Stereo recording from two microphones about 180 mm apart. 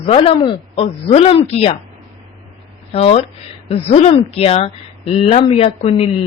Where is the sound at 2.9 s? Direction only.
35° left (ahead or behind).